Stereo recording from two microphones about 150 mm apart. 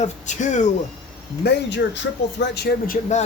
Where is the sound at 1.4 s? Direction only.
90° left.